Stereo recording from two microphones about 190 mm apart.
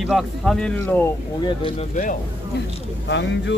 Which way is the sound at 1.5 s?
25° left (ahead or behind).